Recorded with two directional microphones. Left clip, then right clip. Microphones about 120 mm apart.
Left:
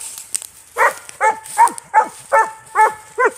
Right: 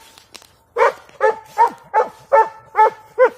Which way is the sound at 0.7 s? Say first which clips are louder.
Even; 35° right (ahead or behind).